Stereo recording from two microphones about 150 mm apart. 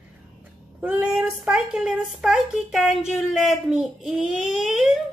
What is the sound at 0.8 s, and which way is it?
A woman's voice, 10° right (ahead or behind).